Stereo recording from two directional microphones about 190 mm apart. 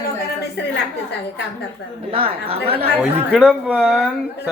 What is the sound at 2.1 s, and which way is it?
Speech, 30° right (ahead or behind).